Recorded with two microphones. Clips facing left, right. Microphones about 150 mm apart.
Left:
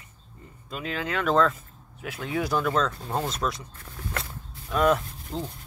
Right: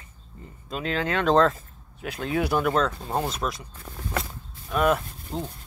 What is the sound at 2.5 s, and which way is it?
Speech, 20° right (ahead or behind).